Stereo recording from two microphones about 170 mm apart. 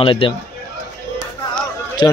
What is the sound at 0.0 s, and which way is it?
Speech, 30° left (ahead or behind).